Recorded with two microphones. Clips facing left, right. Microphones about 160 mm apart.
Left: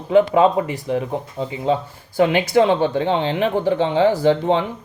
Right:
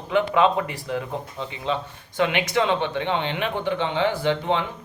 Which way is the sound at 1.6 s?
35° left (ahead or behind).